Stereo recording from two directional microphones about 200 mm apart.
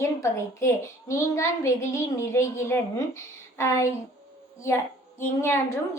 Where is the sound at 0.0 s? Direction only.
15° left (ahead or behind).